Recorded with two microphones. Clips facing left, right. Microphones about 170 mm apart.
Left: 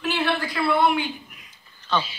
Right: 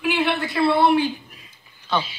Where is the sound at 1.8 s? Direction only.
10° right (ahead or behind).